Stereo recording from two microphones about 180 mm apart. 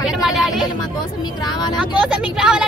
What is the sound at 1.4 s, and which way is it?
Speech, 20° left (ahead or behind).